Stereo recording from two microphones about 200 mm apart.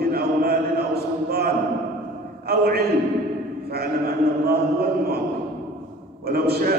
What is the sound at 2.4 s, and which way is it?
Speech, 50° right (ahead or behind).